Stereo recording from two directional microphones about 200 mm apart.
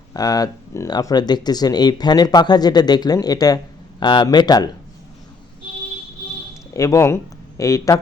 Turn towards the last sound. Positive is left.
turn(degrees=15)  # may be behind; listen again after turning